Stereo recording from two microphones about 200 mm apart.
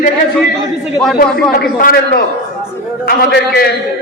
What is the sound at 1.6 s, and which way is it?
Speech, 50° left (ahead or behind).